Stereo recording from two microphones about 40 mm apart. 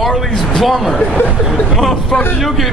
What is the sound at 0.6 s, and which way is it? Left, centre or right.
Speech, centre.